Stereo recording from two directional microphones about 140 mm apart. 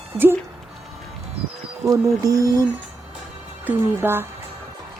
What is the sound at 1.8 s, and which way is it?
Speech, 20° right (ahead or behind).